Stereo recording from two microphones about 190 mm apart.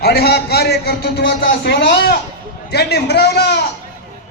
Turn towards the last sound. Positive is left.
turn(degrees=60)  # may be behind; listen again after turning